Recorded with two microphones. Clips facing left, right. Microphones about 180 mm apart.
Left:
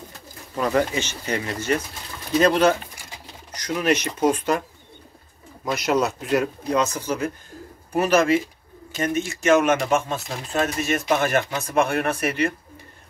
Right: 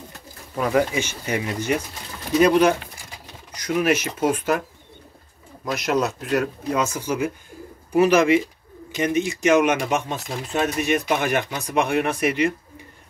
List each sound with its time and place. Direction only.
0.6 s speech: 10° right (ahead or behind)
5.7 s speech: centre (ahead or behind)